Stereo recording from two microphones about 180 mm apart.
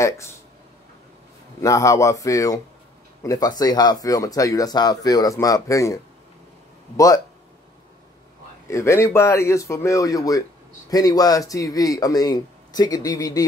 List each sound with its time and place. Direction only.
1.6 s speech: 20° left (ahead or behind)
8.6 s speech: 15° left (ahead or behind)